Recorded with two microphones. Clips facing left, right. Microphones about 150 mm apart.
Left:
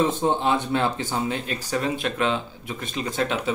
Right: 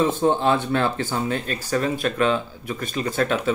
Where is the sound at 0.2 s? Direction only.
15° left (ahead or behind).